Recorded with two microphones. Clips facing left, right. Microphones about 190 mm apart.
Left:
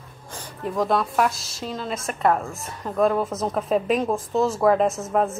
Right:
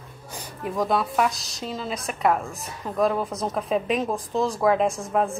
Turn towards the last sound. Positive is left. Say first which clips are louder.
# left 1 dB
turn(degrees=5)  # may be behind; listen again after turning